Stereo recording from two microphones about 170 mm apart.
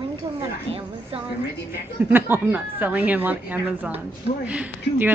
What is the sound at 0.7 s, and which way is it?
Speech, 35° right (ahead or behind).